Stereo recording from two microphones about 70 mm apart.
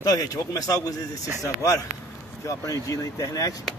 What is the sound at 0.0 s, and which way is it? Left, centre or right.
A man's voice, left.